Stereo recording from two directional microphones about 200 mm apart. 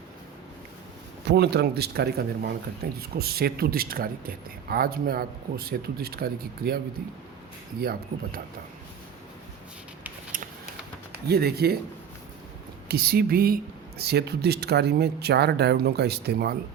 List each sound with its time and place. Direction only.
1.3 s speech: 55° right (ahead or behind)
7.8 s speech: 50° right (ahead or behind)
10.3 s a sound: 45° right (ahead or behind)
11.1 s speech: 50° right (ahead or behind)
12.9 s speech: 50° right (ahead or behind)